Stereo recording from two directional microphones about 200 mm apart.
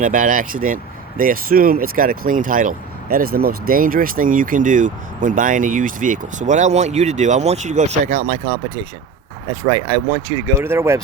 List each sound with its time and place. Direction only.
0.0 s speech: 40° right (ahead or behind)
9.5 s speech: 25° right (ahead or behind)
10.6 s speech: 10° right (ahead or behind)